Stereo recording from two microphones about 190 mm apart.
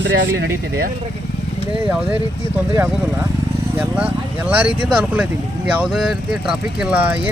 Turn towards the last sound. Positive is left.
turn(degrees=-5)  # may be behind; listen again after turning